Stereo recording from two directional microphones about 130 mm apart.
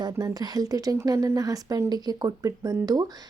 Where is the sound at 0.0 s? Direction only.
30° right (ahead or behind).